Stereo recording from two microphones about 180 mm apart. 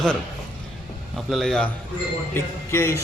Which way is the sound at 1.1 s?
Centre (ahead or behind).